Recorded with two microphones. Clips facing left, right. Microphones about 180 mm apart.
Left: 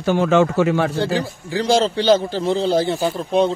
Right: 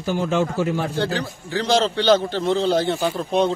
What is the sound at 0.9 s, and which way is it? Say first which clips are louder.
A man's voice: left 3 dB; 10° left (ahead or behind).